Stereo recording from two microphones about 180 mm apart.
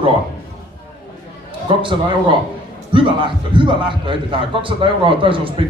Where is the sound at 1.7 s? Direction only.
25° right (ahead or behind).